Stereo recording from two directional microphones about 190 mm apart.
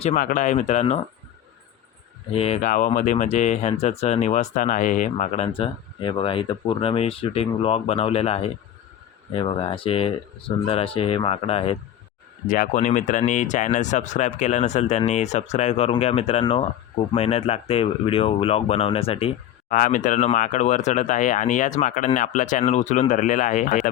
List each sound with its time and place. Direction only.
0.2 s speech: 45° left (ahead or behind)
2.3 s speech: 30° left (ahead or behind)
2.6 s speech: 45° left (ahead or behind)
12.5 s speech: 40° left (ahead or behind)
19.6 s speech: 45° left (ahead or behind)